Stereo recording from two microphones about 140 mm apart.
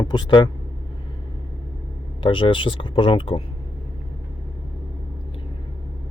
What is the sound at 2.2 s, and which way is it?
Speech, 35° left (ahead or behind).